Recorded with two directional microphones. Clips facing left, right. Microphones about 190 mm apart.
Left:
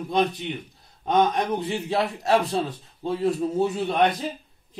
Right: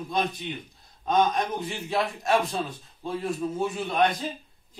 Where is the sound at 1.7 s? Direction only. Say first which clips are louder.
Left 3 dB; 35° left (ahead or behind).